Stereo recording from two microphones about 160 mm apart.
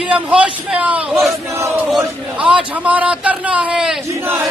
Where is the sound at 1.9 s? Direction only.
5° right (ahead or behind).